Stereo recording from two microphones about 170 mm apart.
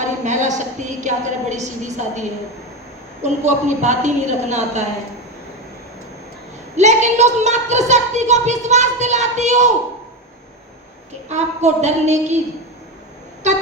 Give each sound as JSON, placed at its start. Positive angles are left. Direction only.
{"t": 0.0, "sound": "a woman's voice", "side_deg": -45}
{"t": 3.2, "sound": "a woman's voice", "side_deg": -45}
{"t": 6.7, "sound": "a woman's voice", "side_deg": -40}
{"t": 11.3, "sound": "a woman's voice", "side_deg": -45}